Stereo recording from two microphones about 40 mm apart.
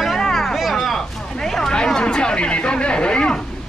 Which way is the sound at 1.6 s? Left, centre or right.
Centre.